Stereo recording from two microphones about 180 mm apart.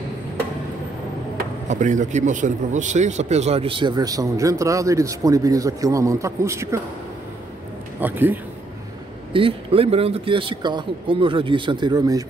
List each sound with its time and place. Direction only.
1.4 s speech: 45° right (ahead or behind); by 6.8 s 15° right (ahead or behind)
8.0 s a man's voice: 10° right (ahead or behind)
9.3 s speech: 30° right (ahead or behind)